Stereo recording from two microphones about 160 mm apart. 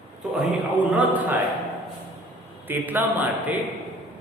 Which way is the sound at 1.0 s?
10° right (ahead or behind).